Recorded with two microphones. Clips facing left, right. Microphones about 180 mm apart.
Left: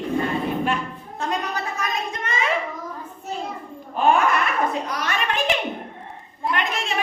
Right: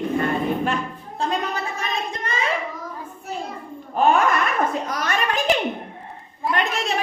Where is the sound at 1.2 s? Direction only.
30° right (ahead or behind).